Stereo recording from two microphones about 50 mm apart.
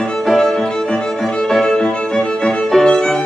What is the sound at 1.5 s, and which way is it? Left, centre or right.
Music, centre.